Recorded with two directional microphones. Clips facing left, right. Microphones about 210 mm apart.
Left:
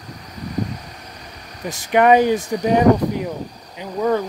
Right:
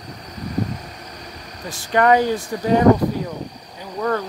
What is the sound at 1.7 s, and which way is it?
Speech, 15° left (ahead or behind).